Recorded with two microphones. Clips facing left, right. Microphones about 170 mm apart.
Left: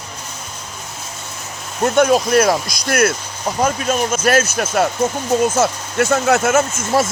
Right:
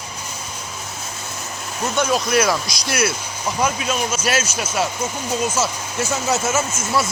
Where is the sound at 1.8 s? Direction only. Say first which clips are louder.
Left 7 dB; 55° left (ahead or behind).